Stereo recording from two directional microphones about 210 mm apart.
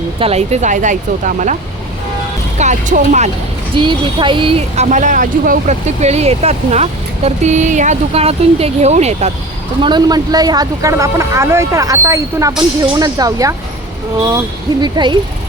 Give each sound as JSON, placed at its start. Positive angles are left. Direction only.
{"t": 0.2, "sound": "speech", "side_deg": -30}
{"t": 2.6, "sound": "speech", "side_deg": -35}
{"t": 3.8, "sound": "speech", "side_deg": -20}
{"t": 9.8, "sound": "speech", "side_deg": -20}
{"t": 14.8, "sound": "speech", "side_deg": -20}